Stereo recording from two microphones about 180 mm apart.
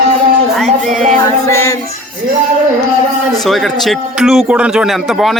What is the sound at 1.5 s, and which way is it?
Child singing, 15° left (ahead or behind).